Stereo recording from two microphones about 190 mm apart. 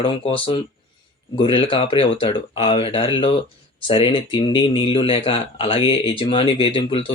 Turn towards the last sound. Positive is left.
turn(degrees=30)  # may be behind; listen again after turning